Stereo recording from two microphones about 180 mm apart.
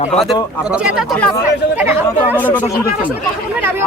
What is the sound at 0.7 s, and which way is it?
Speech, 5° right (ahead or behind).